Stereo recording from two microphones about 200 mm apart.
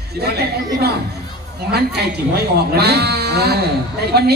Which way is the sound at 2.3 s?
55° right (ahead or behind).